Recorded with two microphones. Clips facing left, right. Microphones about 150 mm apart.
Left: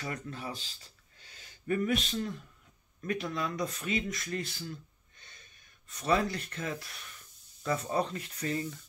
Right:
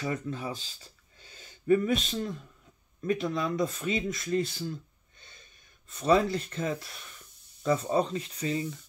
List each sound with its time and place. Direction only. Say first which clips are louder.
0.0 s speech: right 6 dB; 20° right (ahead or behind)
1.7 s speech: right 5 dB; 25° right (ahead or behind)
5.9 s speech: right 5 dB; 25° right (ahead or behind)